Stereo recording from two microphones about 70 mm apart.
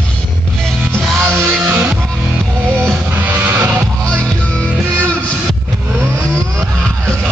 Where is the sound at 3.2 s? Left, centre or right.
Right.